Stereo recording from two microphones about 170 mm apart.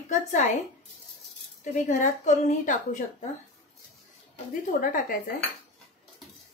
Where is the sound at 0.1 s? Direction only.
45° left (ahead or behind).